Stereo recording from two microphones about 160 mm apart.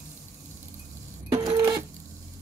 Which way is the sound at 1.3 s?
25° right (ahead or behind).